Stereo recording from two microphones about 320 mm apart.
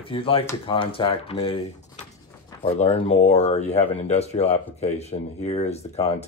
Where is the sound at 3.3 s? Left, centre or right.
Centre.